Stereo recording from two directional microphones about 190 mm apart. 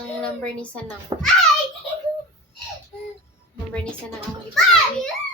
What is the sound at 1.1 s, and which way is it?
Speech, 25° right (ahead or behind).